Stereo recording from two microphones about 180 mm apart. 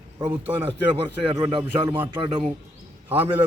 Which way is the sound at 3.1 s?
10° right (ahead or behind).